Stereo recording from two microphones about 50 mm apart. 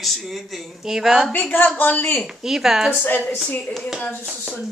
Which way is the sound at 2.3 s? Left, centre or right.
Centre.